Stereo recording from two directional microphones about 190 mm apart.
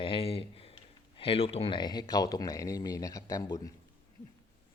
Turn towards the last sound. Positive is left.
turn(degrees=15)  # may be behind; listen again after turning